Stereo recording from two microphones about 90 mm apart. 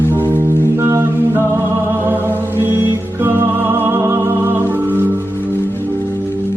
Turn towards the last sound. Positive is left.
turn(degrees=-20)  # may be behind; listen again after turning